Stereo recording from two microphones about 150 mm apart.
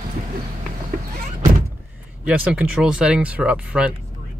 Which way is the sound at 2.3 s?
5° right (ahead or behind).